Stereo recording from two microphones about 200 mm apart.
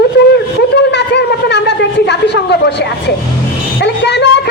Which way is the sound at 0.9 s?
60° left (ahead or behind).